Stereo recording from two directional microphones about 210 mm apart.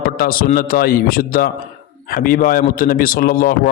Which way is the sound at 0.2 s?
45° left (ahead or behind).